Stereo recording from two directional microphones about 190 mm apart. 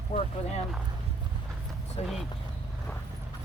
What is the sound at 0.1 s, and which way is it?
Speech, 35° left (ahead or behind).